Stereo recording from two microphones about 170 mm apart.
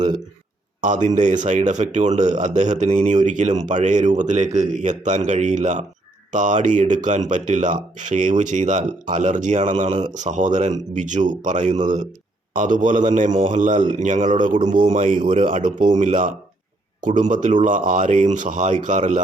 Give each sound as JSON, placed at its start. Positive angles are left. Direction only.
{"t": 0.8, "sound": "speech", "side_deg": -50}